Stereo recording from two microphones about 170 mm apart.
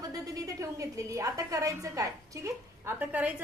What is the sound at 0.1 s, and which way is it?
A woman's voice, 20° right (ahead or behind).